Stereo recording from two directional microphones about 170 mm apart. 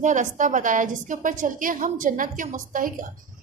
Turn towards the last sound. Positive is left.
turn(degrees=-50)  # may be behind; listen again after turning